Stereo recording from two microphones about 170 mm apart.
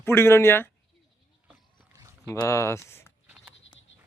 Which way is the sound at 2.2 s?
15° left (ahead or behind).